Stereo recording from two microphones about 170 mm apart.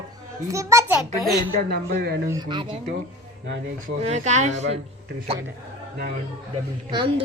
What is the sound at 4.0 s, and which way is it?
A man's voice, 40° right (ahead or behind).